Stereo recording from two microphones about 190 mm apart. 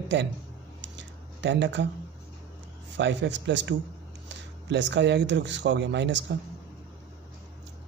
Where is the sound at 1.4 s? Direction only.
65° right (ahead or behind).